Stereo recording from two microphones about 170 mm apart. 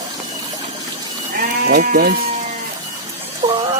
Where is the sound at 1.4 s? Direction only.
50° right (ahead or behind).